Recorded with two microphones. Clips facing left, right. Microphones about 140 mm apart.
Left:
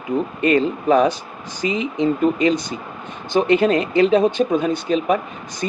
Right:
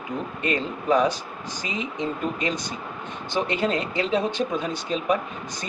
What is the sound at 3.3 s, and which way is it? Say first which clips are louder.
Speech: left 9 dB; 60° left (ahead or behind).